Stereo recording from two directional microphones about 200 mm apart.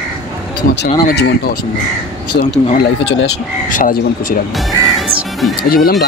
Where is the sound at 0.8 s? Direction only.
55° left (ahead or behind).